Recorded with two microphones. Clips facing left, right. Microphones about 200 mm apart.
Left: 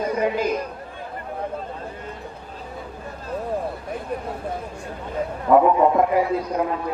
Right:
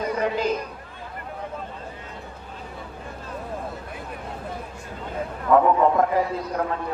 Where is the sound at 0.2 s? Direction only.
10° left (ahead or behind).